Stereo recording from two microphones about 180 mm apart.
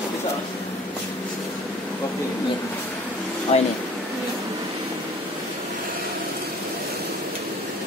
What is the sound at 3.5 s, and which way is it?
Speech, 35° left (ahead or behind).